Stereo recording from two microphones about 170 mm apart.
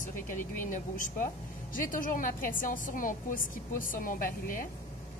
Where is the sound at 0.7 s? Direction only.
50° left (ahead or behind).